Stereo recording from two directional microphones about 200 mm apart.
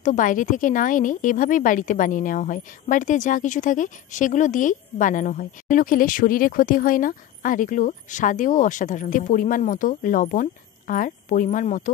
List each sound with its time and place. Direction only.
0.0 s a woman's voice: 40° left (ahead or behind)